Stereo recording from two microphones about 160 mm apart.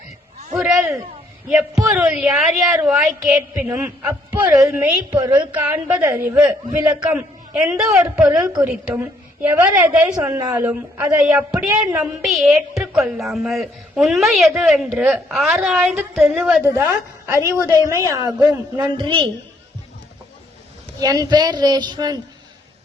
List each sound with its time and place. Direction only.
0.5 s a woman's voice: 5° right (ahead or behind)
8.1 s a woman's voice: 5° right (ahead or behind); by 19.3 s 30° right (ahead or behind)
21.0 s speech: 25° right (ahead or behind)